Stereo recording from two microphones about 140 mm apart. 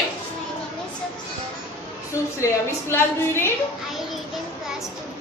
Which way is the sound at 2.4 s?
20° left (ahead or behind).